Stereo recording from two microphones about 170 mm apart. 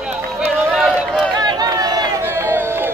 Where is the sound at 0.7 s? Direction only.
Centre (ahead or behind).